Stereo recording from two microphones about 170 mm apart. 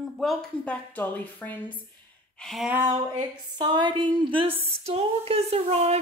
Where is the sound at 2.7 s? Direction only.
20° right (ahead or behind).